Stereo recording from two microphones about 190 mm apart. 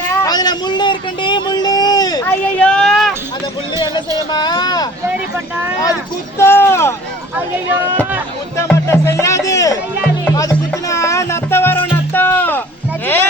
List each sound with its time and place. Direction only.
0.1 s a sound: 15° left (ahead or behind)
2.6 s a sound: 5° left (ahead or behind)
4.3 s speech: 20° left (ahead or behind)
6.4 s speech: 10° left (ahead or behind)
7.3 s speech: 10° right (ahead or behind)
8.5 s music: 15° left (ahead or behind)